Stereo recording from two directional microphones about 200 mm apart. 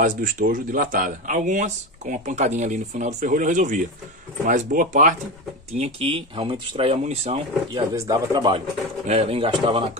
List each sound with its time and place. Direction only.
0.0 s speech: 40° right (ahead or behind)
7.9 s speech: 20° right (ahead or behind)
9.0 s speech: 35° right (ahead or behind)